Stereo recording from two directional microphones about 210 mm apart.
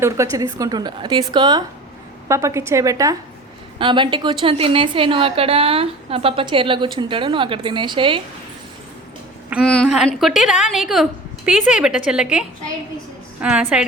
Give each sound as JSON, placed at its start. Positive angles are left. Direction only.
{"t": 0.0, "sound": "a woman's voice", "side_deg": -15}
{"t": 9.6, "sound": "a woman's voice", "side_deg": 5}